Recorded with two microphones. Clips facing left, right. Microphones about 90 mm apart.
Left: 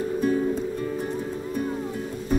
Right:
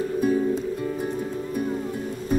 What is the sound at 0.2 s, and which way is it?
Music, 10° right (ahead or behind).